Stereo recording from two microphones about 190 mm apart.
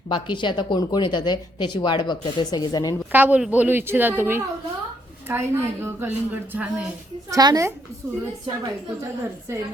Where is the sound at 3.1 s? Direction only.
10° right (ahead or behind).